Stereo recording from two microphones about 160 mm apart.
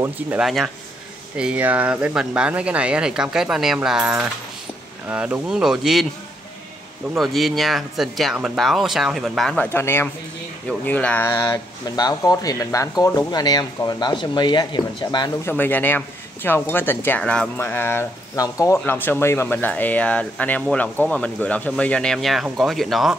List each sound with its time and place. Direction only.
0.4 s speech: centre (ahead or behind)
7.2 s speech: centre (ahead or behind)
11.3 s speech: 25° left (ahead or behind)
15.4 s speech: 10° left (ahead or behind)